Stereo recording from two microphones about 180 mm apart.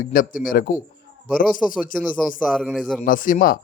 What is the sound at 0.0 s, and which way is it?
Speech, 50° left (ahead or behind).